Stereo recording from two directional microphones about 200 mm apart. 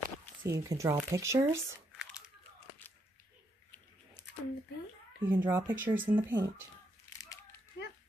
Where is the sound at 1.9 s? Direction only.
Centre (ahead or behind).